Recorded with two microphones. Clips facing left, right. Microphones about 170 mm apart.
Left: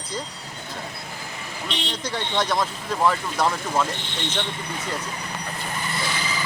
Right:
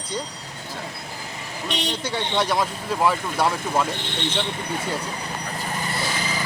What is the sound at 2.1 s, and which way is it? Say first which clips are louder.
Speech: right 1 dB; 5° right (ahead or behind).